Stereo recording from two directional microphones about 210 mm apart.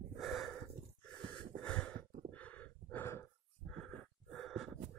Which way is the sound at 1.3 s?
5° left (ahead or behind).